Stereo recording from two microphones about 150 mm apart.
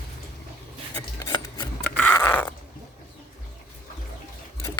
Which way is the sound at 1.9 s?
15° left (ahead or behind).